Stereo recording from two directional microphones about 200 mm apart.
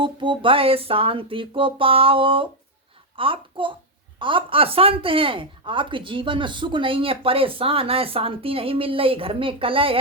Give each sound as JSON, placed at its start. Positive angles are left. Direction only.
{"t": 0.0, "sound": "speech", "side_deg": -25}